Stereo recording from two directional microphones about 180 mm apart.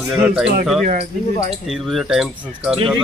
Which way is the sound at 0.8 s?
40° right (ahead or behind).